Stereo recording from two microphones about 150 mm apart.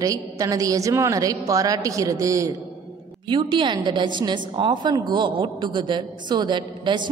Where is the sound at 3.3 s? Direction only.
30° right (ahead or behind).